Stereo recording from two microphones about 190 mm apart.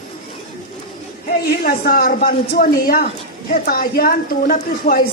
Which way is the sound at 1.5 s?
50° left (ahead or behind).